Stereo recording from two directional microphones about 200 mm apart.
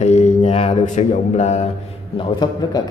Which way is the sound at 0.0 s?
35° left (ahead or behind).